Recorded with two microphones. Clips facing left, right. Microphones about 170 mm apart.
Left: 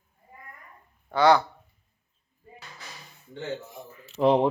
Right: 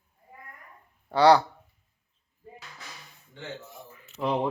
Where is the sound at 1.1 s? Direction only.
35° right (ahead or behind).